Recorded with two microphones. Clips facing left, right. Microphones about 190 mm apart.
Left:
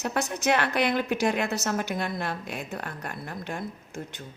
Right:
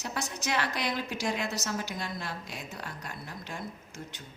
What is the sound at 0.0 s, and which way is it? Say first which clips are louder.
A woman's voice: left 8 dB; 60° left (ahead or behind).